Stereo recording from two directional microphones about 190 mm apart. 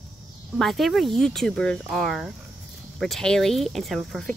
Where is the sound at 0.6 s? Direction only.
Centre (ahead or behind).